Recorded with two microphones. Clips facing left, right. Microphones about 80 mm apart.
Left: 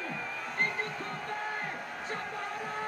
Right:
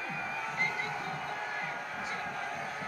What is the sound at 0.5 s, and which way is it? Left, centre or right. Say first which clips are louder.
Music: left 3 dB; left.